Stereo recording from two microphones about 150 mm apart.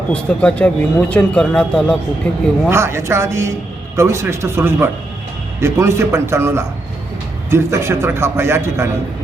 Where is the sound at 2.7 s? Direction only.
15° right (ahead or behind).